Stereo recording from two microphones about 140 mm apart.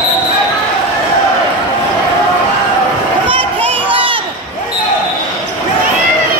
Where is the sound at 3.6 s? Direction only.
40° right (ahead or behind).